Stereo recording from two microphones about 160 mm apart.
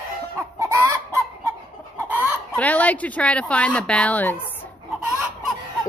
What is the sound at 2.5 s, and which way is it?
Speech, 10° left (ahead or behind).